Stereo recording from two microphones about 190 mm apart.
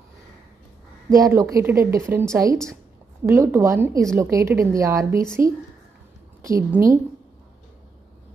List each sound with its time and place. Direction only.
1.1 s speech: 15° right (ahead or behind)
6.4 s speech: 15° right (ahead or behind)